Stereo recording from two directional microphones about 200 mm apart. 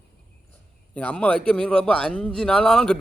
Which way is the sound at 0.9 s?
5° left (ahead or behind).